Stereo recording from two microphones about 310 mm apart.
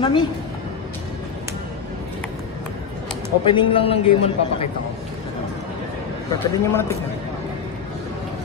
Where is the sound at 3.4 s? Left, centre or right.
Centre.